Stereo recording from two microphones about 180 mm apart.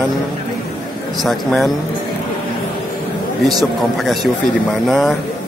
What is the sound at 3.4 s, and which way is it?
Speech, centre (ahead or behind).